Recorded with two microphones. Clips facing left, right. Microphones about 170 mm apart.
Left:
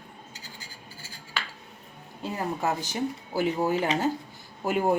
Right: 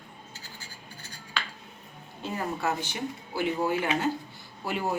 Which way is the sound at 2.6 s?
40° left (ahead or behind).